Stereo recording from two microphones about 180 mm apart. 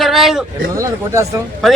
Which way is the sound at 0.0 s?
Centre (ahead or behind).